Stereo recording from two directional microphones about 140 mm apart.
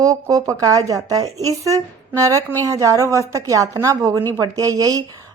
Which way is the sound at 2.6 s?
25° right (ahead or behind).